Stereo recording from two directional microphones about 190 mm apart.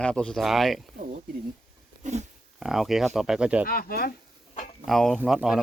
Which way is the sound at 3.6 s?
50° left (ahead or behind).